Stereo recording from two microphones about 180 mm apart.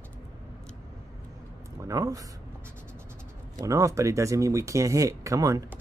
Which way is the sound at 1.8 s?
20° right (ahead or behind).